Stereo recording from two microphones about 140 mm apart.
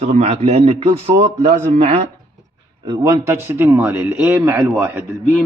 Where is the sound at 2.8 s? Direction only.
30° right (ahead or behind).